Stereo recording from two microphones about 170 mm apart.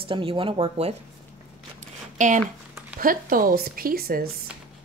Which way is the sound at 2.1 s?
45° right (ahead or behind).